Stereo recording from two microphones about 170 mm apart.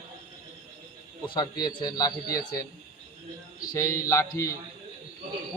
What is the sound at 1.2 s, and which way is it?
A man's voice, 25° left (ahead or behind).